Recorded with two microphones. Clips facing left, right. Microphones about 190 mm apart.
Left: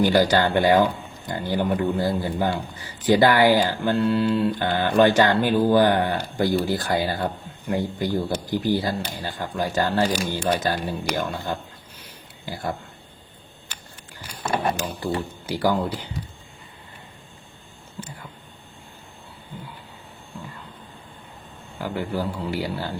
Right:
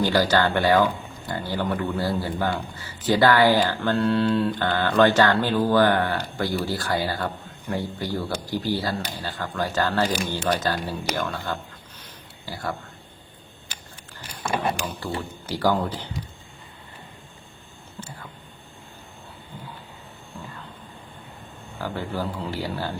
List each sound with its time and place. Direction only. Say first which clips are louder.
0.0 s speech: left 2 dB; 15° left (ahead or behind)
4.5 s speech: left 1 dB; 15° left (ahead or behind)
12.0 s a sound: left 3 dB; 15° left (ahead or behind)
15.0 s speech: left 4 dB; 15° left (ahead or behind)
21.8 s speech: left 2 dB; 15° left (ahead or behind)